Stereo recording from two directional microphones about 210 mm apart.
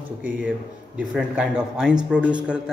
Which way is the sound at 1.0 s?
5° right (ahead or behind).